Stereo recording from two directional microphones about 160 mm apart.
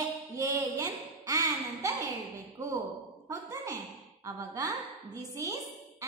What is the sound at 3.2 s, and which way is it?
Speech, 20° right (ahead or behind).